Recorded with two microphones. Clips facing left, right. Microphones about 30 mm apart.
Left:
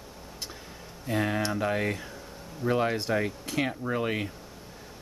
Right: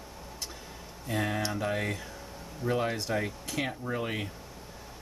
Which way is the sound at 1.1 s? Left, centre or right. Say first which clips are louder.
Left 3 dB; centre.